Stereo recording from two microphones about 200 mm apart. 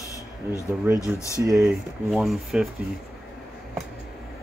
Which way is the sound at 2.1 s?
Centre (ahead or behind).